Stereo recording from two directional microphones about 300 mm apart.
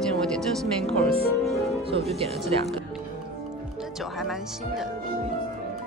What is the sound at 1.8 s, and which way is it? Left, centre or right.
Speech, centre.